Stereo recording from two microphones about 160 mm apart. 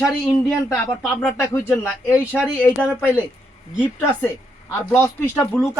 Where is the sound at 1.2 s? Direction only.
15° left (ahead or behind).